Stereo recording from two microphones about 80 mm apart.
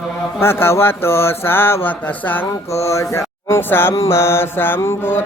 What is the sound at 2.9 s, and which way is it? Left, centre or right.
Speech, left.